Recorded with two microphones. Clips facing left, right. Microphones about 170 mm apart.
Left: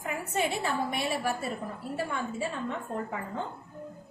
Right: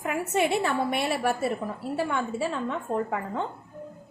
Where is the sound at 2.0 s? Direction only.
80° right.